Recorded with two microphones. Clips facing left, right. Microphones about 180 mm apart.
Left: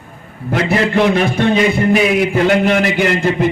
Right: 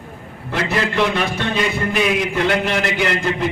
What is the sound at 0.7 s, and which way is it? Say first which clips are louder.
A man's voice: left 6 dB; 50° left (ahead or behind).